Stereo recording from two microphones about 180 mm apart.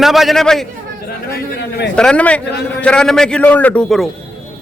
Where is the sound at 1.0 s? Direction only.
60° left (ahead or behind).